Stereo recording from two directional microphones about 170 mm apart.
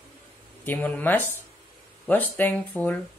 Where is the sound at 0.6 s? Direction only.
10° left (ahead or behind).